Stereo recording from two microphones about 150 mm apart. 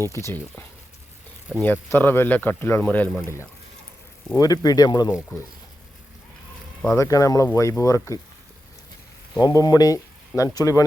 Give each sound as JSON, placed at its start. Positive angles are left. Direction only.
{"t": 0.0, "sound": "speech", "side_deg": 20}
{"t": 1.6, "sound": "speech", "side_deg": 10}
{"t": 4.4, "sound": "speech", "side_deg": 25}
{"t": 6.9, "sound": "speech", "side_deg": 20}
{"t": 9.4, "sound": "speech", "side_deg": 25}